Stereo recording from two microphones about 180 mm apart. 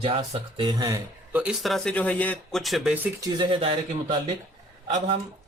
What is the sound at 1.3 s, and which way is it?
Speech, 5° right (ahead or behind).